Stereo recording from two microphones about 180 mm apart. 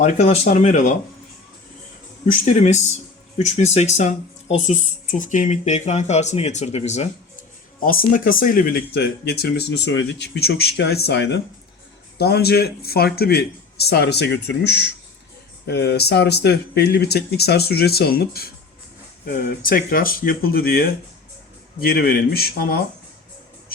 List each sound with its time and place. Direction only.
0.0 s speech: 40° left (ahead or behind)
2.2 s speech: 45° left (ahead or behind)
7.8 s speech: 50° left (ahead or behind); by 11.3 s 75° left (ahead or behind)
12.1 s speech: 60° left (ahead or behind)